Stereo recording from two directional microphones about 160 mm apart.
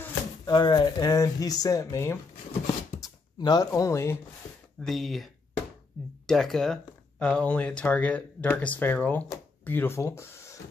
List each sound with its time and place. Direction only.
0.5 s speech: 30° left (ahead or behind)
2.6 s a sound: 25° left (ahead or behind)
4.8 s speech: centre (ahead or behind); by 10.6 s 20° left (ahead or behind)